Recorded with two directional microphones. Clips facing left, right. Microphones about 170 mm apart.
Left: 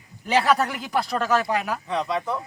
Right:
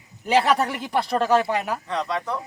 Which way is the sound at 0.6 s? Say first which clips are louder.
Right 1 dB; 30° right (ahead or behind).